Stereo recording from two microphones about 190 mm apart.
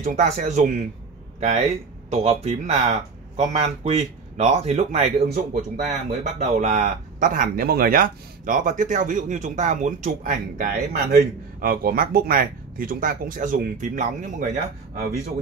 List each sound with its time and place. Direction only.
0.0 s speech: 40° right (ahead or behind)
2.0 s speech: 35° right (ahead or behind)